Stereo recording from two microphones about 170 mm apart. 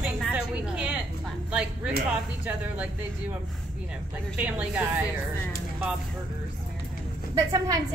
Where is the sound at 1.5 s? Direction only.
5° right (ahead or behind).